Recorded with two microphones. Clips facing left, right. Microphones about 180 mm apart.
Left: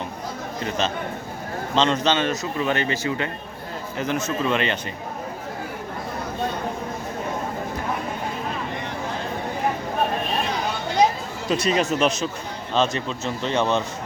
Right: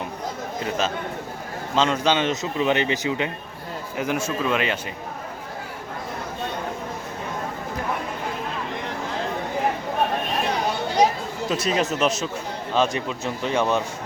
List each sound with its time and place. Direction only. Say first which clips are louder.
1.7 s a man's voice: even; 10° right (ahead or behind)
11.4 s a man's voice: left 2 dB; centre (ahead or behind)